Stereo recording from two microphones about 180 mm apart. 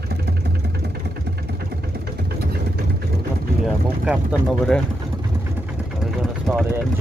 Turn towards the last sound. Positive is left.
turn(degrees=-5)  # may be behind; listen again after turning